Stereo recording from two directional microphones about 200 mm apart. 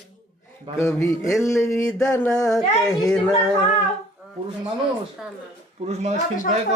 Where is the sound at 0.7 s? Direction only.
15° left (ahead or behind).